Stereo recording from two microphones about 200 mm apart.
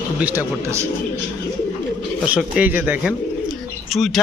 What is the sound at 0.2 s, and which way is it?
Speech, 10° right (ahead or behind).